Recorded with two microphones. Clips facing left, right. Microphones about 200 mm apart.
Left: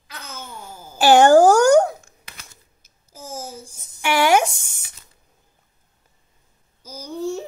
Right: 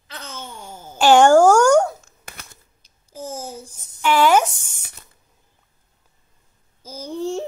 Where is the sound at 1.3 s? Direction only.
35° left (ahead or behind).